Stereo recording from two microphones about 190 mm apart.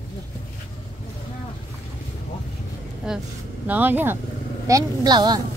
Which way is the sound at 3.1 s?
5° right (ahead or behind).